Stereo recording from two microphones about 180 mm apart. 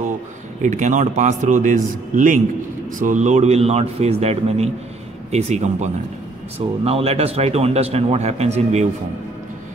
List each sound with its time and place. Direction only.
0.6 s a man's voice: 45° right (ahead or behind)